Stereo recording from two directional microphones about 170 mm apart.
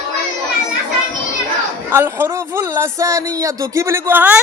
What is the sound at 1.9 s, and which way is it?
Speech, 15° right (ahead or behind).